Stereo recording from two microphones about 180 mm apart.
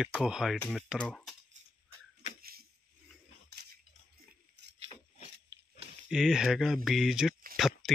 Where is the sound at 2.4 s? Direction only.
55° right (ahead or behind).